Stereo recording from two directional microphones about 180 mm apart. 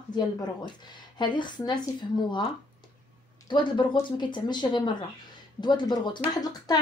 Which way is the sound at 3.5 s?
25° left (ahead or behind).